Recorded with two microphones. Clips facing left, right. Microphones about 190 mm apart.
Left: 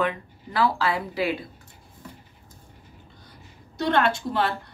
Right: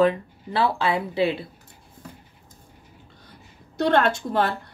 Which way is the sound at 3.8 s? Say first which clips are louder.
Right 2 dB; 50° right (ahead or behind).